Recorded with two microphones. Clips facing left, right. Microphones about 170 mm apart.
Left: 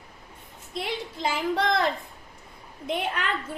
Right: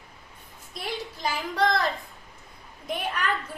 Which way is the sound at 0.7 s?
25° left (ahead or behind).